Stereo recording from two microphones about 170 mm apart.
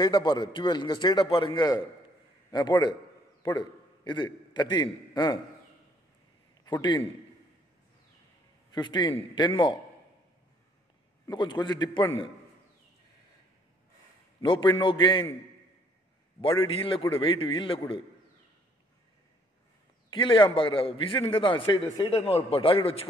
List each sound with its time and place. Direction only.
0.0 s a man's voice: 25° left (ahead or behind)
6.6 s a man's voice: 25° left (ahead or behind)
8.7 s a man's voice: 25° left (ahead or behind)
11.2 s a man's voice: 25° left (ahead or behind)
14.4 s a man's voice: 30° left (ahead or behind)
16.3 s a man's voice: 30° left (ahead or behind)
20.1 s a man's voice: 30° left (ahead or behind)